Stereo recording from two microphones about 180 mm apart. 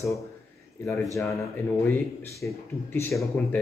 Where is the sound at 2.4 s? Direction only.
15° left (ahead or behind).